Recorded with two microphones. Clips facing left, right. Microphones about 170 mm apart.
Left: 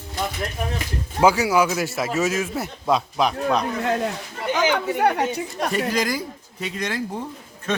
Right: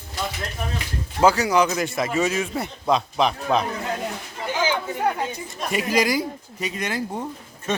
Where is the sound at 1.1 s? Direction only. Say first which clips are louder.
Even; 10° left (ahead or behind).